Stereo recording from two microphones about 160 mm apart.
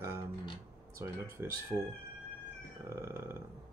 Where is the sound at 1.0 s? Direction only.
15° right (ahead or behind).